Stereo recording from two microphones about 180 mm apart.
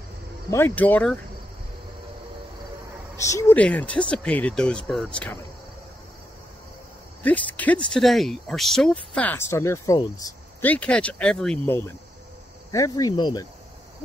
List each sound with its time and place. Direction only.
0.5 s speech: 10° left (ahead or behind)
3.2 s speech: 15° left (ahead or behind)
7.5 s speech: 10° left (ahead or behind); by 13.5 s 25° left (ahead or behind)